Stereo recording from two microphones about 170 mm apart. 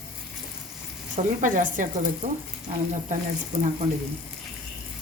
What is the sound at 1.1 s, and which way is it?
Speech, 50° right (ahead or behind).